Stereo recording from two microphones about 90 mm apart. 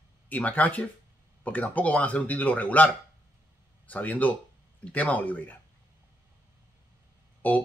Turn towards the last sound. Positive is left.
turn(degrees=20)  # may be behind; listen again after turning